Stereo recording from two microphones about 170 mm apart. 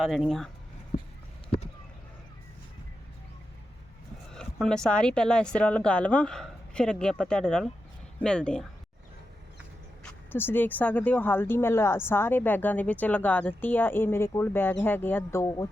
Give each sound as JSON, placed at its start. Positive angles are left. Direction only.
{"t": 0.0, "sound": "speech", "side_deg": 0}
{"t": 0.9, "sound": "a sound", "side_deg": 35}
{"t": 4.4, "sound": "speech", "side_deg": 5}
{"t": 10.0, "sound": "speech", "side_deg": 10}